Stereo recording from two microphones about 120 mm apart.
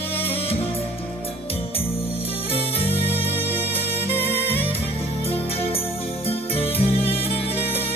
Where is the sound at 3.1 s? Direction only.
50° left (ahead or behind).